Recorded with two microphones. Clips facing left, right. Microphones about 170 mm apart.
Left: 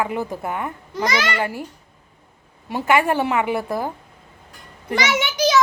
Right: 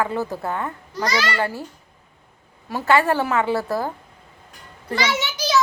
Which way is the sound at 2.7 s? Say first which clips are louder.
Even; 20° left (ahead or behind).